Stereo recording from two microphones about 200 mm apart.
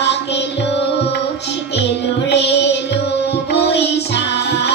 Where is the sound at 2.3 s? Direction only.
60° left (ahead or behind).